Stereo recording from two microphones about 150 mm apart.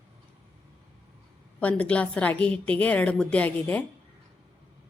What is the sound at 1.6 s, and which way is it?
A woman's voice, 10° left (ahead or behind).